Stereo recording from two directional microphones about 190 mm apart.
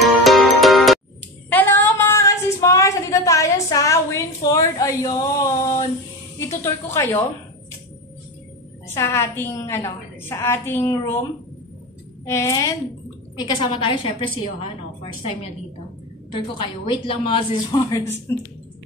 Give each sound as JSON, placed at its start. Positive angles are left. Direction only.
{"t": 0.0, "sound": "music", "side_deg": 0}
{"t": 1.5, "sound": "a sound", "side_deg": 10}
{"t": 6.6, "sound": "a woman's voice", "side_deg": 15}
{"t": 8.8, "sound": "a woman's voice", "side_deg": 15}
{"t": 12.3, "sound": "a woman's voice", "side_deg": 15}
{"t": 13.4, "sound": "a woman's voice", "side_deg": 25}
{"t": 16.8, "sound": "a woman's voice", "side_deg": 25}